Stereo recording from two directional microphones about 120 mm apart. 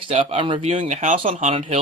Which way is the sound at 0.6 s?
75° right (ahead or behind).